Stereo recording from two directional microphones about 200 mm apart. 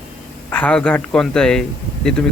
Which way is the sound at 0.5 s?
5° left (ahead or behind).